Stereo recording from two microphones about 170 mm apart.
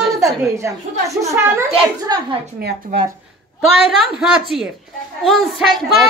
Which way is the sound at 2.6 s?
70° right (ahead or behind).